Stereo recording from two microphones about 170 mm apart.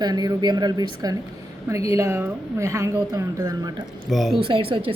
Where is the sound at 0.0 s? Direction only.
25° right (ahead or behind).